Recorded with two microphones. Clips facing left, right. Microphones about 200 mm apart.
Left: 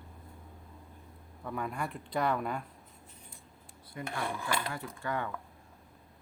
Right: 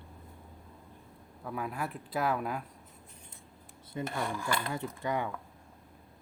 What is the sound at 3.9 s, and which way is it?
Speech, 25° right (ahead or behind).